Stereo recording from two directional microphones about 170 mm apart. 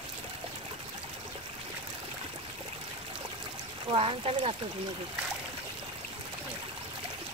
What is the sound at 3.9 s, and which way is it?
Speech, 35° right (ahead or behind).